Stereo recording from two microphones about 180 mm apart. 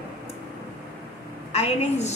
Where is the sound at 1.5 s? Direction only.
35° left (ahead or behind).